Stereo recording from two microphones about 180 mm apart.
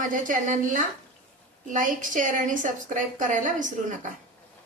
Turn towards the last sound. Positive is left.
turn(degrees=-45)  # may be behind; listen again after turning